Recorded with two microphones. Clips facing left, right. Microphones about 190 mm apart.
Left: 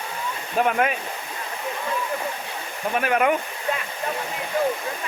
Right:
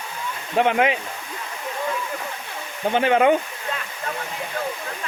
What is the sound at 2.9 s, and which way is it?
Speech, 25° right (ahead or behind).